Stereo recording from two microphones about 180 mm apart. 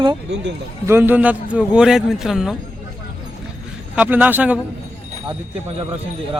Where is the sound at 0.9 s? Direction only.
10° right (ahead or behind).